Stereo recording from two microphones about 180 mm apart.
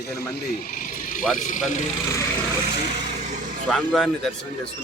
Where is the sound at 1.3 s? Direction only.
45° left (ahead or behind).